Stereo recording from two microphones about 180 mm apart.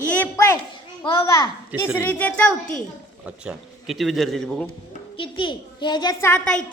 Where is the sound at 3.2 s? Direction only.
5° right (ahead or behind).